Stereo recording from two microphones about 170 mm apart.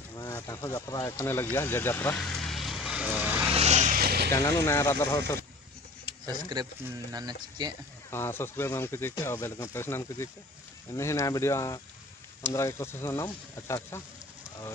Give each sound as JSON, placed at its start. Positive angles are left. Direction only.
{"t": 0.1, "sound": "speech", "side_deg": 20}
{"t": 3.5, "sound": "vehicle", "side_deg": -40}
{"t": 4.0, "sound": "vehicle", "side_deg": -65}
{"t": 4.3, "sound": "speech", "side_deg": 15}
{"t": 6.2, "sound": "speech", "side_deg": -25}
{"t": 8.1, "sound": "speech", "side_deg": 15}